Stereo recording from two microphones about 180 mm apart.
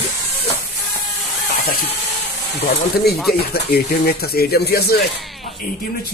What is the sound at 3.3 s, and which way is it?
Speech, 60° left (ahead or behind).